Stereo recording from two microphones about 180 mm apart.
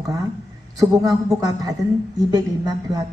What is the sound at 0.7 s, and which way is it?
A woman's voice, 20° right (ahead or behind).